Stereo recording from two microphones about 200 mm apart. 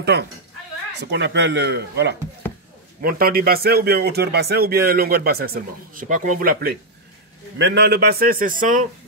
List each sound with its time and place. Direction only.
0.1 s speech: 55° right (ahead or behind)
3.0 s speech: 45° right (ahead or behind)